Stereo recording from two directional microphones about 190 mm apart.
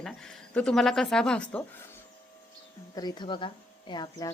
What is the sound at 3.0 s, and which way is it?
Speech, 20° left (ahead or behind).